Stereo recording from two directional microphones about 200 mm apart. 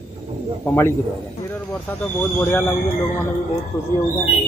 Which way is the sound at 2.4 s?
10° left (ahead or behind).